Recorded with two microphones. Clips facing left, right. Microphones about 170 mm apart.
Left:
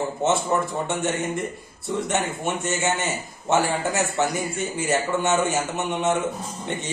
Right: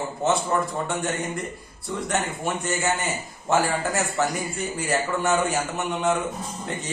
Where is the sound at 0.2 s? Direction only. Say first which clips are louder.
Even; 20° left (ahead or behind).